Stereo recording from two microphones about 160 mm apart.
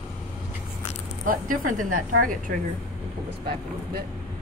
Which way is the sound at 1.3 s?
55° right (ahead or behind).